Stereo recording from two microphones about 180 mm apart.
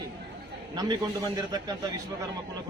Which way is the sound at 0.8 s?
25° right (ahead or behind).